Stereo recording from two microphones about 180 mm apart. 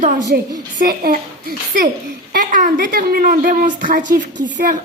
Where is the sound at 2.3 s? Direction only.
45° right (ahead or behind).